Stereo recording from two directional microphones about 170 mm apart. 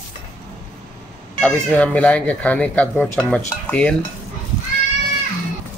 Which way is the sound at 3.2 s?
5° left (ahead or behind).